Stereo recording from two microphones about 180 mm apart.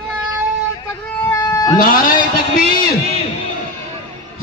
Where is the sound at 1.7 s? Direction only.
50° left (ahead or behind).